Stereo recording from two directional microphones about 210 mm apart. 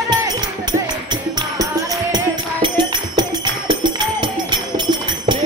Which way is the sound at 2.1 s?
20° right (ahead or behind).